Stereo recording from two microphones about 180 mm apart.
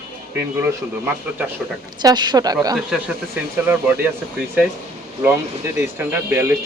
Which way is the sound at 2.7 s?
5° right (ahead or behind).